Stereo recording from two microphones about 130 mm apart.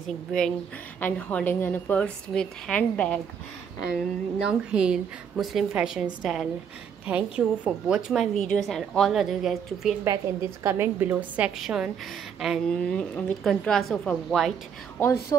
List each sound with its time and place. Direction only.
0.0 s a woman's voice: 5° left (ahead or behind)
4.5 s a woman's voice: 5° right (ahead or behind)
10.0 s a woman's voice: 20° right (ahead or behind); by 12.7 s 5° right (ahead or behind)
12.8 s a woman's voice: 10° left (ahead or behind)
15.0 s speech: 20° left (ahead or behind)